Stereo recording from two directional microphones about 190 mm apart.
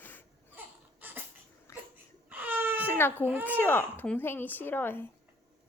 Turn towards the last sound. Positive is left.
turn(degrees=10)  # may be behind; listen again after turning